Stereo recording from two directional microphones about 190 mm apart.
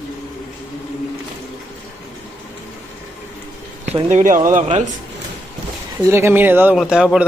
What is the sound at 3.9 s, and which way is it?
Speech, 40° right (ahead or behind).